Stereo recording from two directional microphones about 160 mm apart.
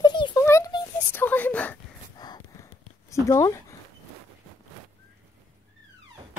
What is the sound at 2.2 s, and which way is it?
Snort, 25° left (ahead or behind).